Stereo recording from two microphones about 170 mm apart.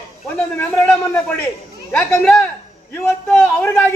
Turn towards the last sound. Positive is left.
turn(degrees=10)  # may be behind; listen again after turning